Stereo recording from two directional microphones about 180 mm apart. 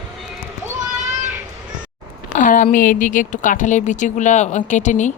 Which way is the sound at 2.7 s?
45° left (ahead or behind).